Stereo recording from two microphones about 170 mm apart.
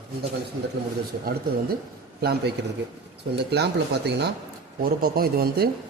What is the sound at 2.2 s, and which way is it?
Speech, 70° right (ahead or behind).